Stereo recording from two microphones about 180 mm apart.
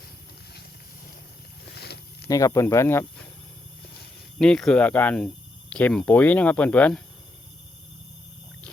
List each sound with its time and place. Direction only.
1.7 s a sound: 65° left (ahead or behind)
2.3 s speech: 15° left (ahead or behind)
4.4 s speech: 5° left (ahead or behind)